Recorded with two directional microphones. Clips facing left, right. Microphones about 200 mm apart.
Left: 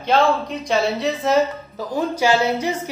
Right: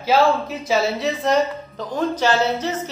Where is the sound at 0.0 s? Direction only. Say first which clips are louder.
Right 1 dB; 5° right (ahead or behind).